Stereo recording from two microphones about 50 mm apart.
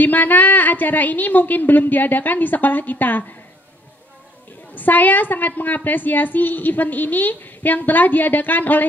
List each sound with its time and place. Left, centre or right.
0.0 s a woman's voice: left
4.7 s a woman's voice: left